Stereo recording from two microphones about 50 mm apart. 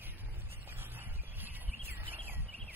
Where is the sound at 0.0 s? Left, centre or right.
Right.